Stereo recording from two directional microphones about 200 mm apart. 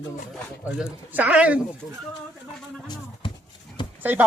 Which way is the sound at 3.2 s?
25° left (ahead or behind).